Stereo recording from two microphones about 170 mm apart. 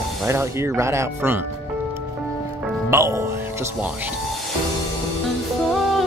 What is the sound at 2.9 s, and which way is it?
Speech, 20° right (ahead or behind).